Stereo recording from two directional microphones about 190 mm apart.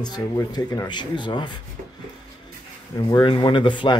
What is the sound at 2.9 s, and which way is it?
Speech, 25° left (ahead or behind).